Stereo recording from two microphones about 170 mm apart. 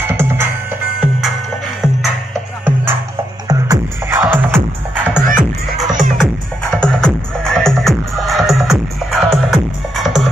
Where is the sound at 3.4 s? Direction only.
20° right (ahead or behind).